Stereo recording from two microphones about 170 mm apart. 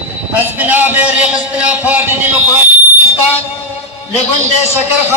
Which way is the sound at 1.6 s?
10° right (ahead or behind).